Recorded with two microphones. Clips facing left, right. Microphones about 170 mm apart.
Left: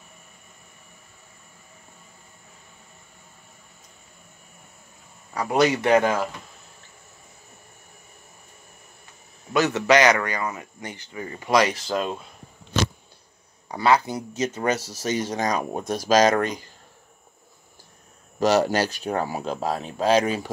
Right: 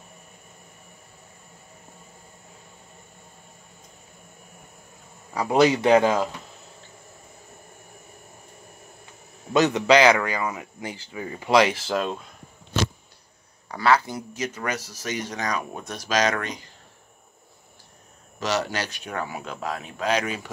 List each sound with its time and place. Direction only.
5.6 s speech: 10° right (ahead or behind)
9.5 s speech: 20° right (ahead or behind); by 12.2 s centre (ahead or behind)
13.7 s speech: 20° left (ahead or behind); by 16.6 s 45° left (ahead or behind)
18.4 s speech: 45° left (ahead or behind); by 20.4 s 30° left (ahead or behind)